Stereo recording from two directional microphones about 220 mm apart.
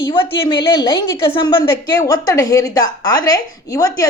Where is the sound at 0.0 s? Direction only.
20° left (ahead or behind).